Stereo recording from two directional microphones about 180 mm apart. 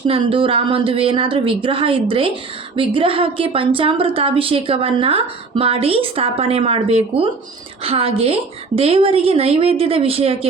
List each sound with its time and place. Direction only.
0.1 s a woman's voice: 30° right (ahead or behind)